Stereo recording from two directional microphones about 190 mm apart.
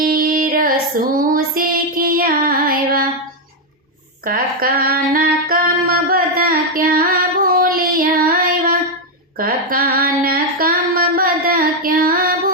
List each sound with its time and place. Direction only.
0.0 s female singing: 50° right (ahead or behind)
1.5 s child singing: 50° right (ahead or behind)
4.2 s female singing: 50° right (ahead or behind)
9.4 s a sound: 50° right (ahead or behind)